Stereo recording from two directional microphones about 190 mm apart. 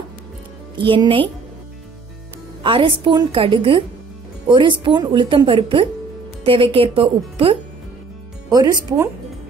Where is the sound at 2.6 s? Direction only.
25° right (ahead or behind).